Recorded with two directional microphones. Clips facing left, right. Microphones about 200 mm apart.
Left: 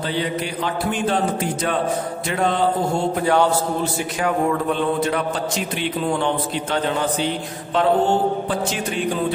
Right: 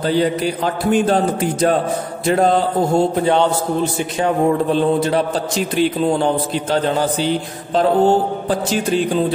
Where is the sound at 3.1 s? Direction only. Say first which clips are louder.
Right 2 dB; 25° right (ahead or behind).